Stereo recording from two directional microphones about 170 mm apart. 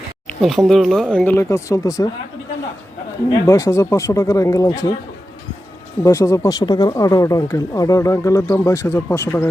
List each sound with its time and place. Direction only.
0.4 s speech: centre (ahead or behind); by 2.0 s 20° left (ahead or behind)
3.2 s speech: 20° left (ahead or behind)
6.1 s speech: 15° left (ahead or behind)